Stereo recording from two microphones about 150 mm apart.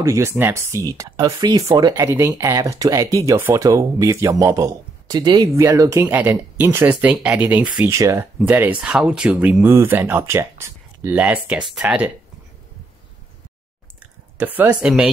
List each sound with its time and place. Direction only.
0.0 s speech: 20° right (ahead or behind)
14.4 s speech: 10° right (ahead or behind)